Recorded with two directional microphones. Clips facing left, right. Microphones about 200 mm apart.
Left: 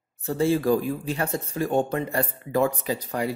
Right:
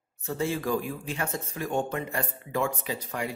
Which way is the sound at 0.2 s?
35° left (ahead or behind).